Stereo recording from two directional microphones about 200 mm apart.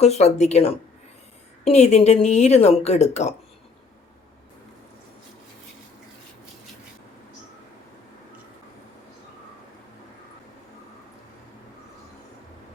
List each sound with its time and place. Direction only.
0.0 s speech: 35° left (ahead or behind)